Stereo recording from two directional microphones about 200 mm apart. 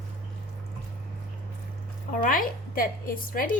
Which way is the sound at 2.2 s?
45° left (ahead or behind).